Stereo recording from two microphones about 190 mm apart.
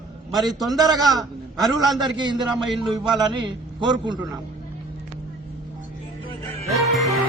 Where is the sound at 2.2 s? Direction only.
25° right (ahead or behind).